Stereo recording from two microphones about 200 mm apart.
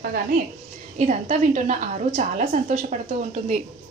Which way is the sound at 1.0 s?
35° right (ahead or behind).